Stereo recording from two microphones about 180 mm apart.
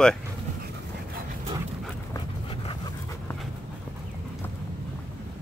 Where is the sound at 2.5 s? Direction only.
30° left (ahead or behind).